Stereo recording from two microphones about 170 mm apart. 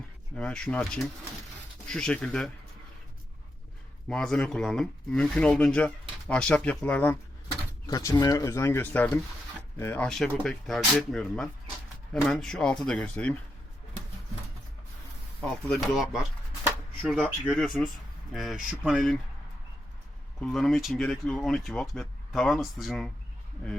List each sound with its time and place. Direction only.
0.3 s speech: 5° left (ahead or behind)
4.1 s speech: 5° left (ahead or behind)
7.9 s speech: 20° left (ahead or behind)
15.4 s speech: 5° left (ahead or behind)
16.6 s a sound: 5° right (ahead or behind)
17.2 s speech: 5° right (ahead or behind)
20.4 s speech: centre (ahead or behind)